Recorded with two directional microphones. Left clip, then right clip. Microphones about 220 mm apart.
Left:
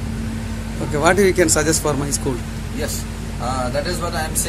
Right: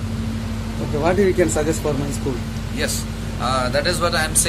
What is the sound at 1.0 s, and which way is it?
Speech, 15° left (ahead or behind).